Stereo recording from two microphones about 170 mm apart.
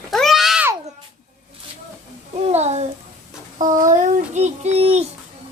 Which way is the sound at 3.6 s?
50° right (ahead or behind).